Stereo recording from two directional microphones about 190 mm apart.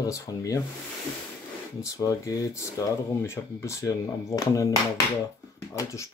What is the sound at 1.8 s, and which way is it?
Speech, 15° left (ahead or behind).